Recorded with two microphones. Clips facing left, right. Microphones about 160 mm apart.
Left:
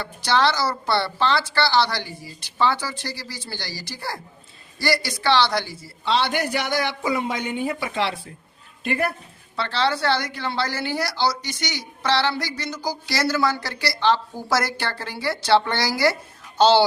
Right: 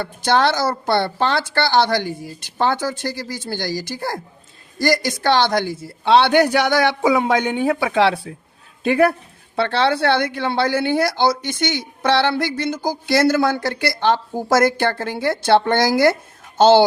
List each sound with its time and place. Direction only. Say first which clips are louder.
0.0 s a woman's voice: right 3 dB; 50° right (ahead or behind); by 9.1 s 75° right (ahead or behind)
9.6 s a woman's voice: right 5 dB; 60° right (ahead or behind)